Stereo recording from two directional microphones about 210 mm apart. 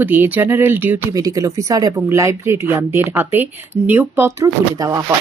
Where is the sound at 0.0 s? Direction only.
10° right (ahead or behind).